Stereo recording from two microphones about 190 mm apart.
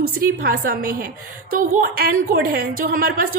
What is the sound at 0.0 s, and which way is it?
A woman's voice, 50° right (ahead or behind).